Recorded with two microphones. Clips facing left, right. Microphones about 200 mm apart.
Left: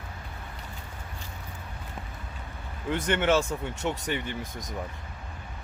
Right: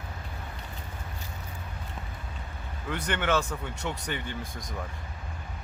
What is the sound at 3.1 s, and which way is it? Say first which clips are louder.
Speech: left 3 dB; 25° left (ahead or behind).